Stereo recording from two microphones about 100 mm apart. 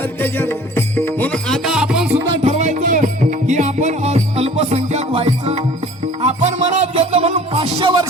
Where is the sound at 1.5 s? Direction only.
5° left (ahead or behind).